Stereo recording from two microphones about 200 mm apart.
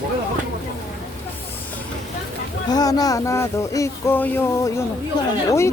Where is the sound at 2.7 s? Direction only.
20° left (ahead or behind).